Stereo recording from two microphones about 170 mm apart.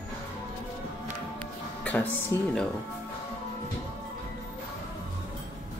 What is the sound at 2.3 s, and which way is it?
Speech, 20° left (ahead or behind).